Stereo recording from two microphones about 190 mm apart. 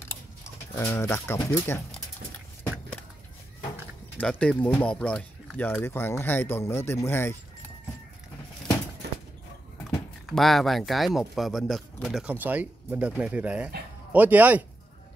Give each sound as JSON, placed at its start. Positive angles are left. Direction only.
{"t": 0.7, "sound": "speech", "side_deg": 15}
{"t": 4.2, "sound": "speech", "side_deg": 5}
{"t": 9.0, "sound": "a sound", "side_deg": -60}
{"t": 9.8, "sound": "speech", "side_deg": 0}